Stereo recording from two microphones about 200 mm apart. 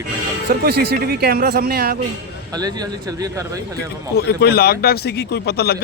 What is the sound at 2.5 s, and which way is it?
Speech, 20° right (ahead or behind).